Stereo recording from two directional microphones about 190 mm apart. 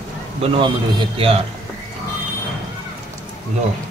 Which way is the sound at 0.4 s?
25° right (ahead or behind).